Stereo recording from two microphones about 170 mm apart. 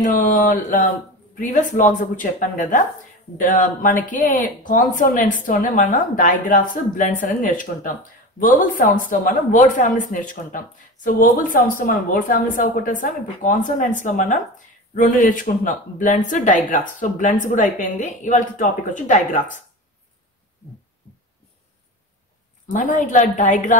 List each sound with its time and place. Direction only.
0.0 s speech: 50° left (ahead or behind)
21.0 s heart sounds: 10° left (ahead or behind)
22.7 s speech: 50° left (ahead or behind)